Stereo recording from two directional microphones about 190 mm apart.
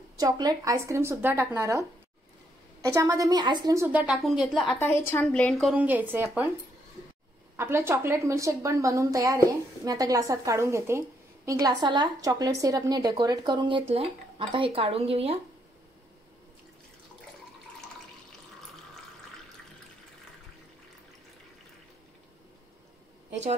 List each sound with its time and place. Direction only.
0.2 s a woman's voice: 20° right (ahead or behind); by 4.7 s centre (ahead or behind)
4.7 s speech: 10° left (ahead or behind); by 6.5 s 10° right (ahead or behind)
7.5 s a woman's voice: 10° right (ahead or behind); by 15.3 s 30° right (ahead or behind)